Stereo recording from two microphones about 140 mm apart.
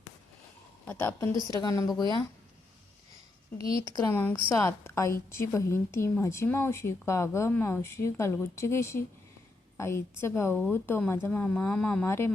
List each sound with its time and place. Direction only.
0.9 s speech: 15° left (ahead or behind)
3.6 s speech: 25° left (ahead or behind); by 12.0 s 5° left (ahead or behind)
12.0 s speech: 15° left (ahead or behind)